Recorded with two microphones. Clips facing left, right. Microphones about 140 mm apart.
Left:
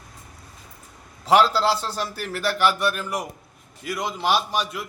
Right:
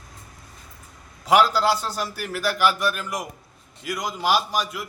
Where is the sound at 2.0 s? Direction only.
5° right (ahead or behind).